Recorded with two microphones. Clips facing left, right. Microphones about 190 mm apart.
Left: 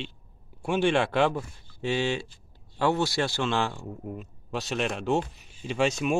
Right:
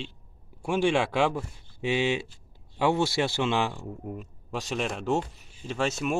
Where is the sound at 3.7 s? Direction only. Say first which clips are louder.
Even; centre (ahead or behind).